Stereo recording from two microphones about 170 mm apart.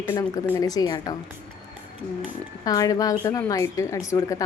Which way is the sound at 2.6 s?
20° left (ahead or behind).